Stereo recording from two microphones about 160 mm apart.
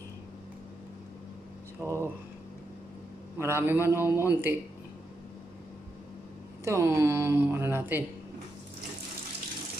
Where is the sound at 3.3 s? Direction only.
15° right (ahead or behind).